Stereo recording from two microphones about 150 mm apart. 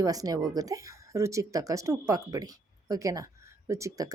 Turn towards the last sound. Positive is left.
turn(degrees=-20)  # may be behind; listen again after turning